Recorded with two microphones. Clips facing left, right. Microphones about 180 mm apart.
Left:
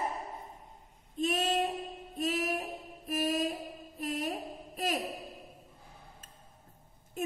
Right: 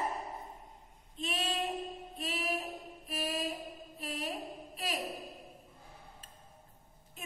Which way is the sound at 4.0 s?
45° left (ahead or behind).